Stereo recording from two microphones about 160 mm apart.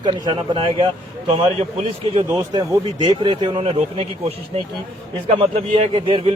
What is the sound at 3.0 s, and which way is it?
A man's voice, 30° right (ahead or behind).